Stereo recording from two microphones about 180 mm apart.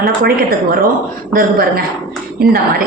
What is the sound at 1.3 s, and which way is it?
Speech, 55° right (ahead or behind).